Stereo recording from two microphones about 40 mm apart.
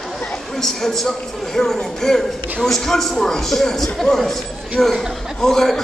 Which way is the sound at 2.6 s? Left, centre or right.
Centre.